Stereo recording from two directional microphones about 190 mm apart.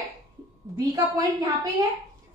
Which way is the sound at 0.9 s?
15° right (ahead or behind).